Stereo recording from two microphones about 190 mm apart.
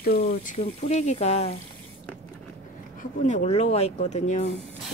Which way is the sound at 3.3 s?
35° left (ahead or behind).